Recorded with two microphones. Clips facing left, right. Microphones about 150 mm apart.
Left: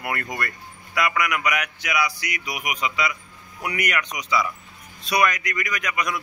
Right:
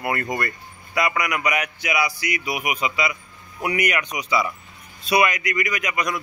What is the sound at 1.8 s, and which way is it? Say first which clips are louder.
Speech: right 1 dB; 5° right (ahead or behind).